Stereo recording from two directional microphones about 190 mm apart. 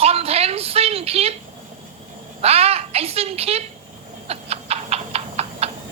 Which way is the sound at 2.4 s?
30° right (ahead or behind).